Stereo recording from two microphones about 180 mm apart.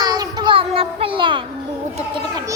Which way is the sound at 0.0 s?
20° right (ahead or behind).